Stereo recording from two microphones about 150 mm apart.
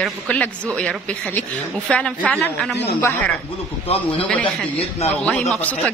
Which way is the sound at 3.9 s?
45° left (ahead or behind).